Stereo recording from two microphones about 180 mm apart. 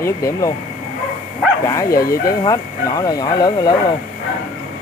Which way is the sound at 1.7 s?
15° left (ahead or behind).